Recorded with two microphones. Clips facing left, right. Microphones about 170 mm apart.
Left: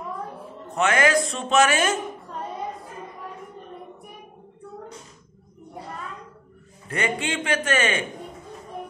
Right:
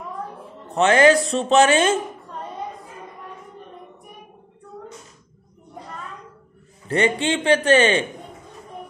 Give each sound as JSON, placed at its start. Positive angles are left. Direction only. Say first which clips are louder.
{"t": 0.7, "sound": "a man's voice", "louder": "right 6 dB", "side_deg": -30}
{"t": 6.9, "sound": "a man's voice", "louder": "right 6 dB", "side_deg": -30}